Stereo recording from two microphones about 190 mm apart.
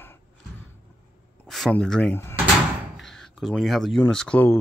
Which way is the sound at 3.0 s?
Centre (ahead or behind).